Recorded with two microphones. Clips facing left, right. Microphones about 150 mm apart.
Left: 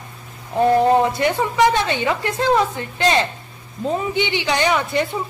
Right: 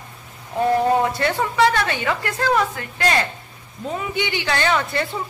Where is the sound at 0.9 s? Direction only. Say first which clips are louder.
Left 3 dB; 20° left (ahead or behind).